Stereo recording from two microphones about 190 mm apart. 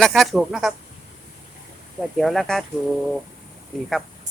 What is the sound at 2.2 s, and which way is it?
Speech, centre (ahead or behind).